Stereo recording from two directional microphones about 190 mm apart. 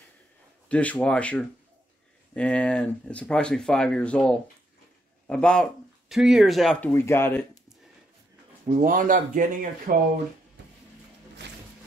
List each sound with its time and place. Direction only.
0.7 s speech: 5° left (ahead or behind)
8.8 s speech: 45° right (ahead or behind)